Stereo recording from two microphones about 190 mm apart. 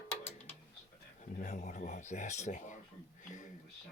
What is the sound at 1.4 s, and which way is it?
Speech, 40° left (ahead or behind).